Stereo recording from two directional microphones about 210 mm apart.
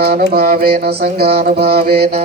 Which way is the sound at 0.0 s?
45° right (ahead or behind).